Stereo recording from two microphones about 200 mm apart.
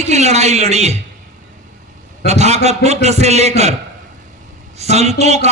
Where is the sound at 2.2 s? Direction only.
35° right (ahead or behind).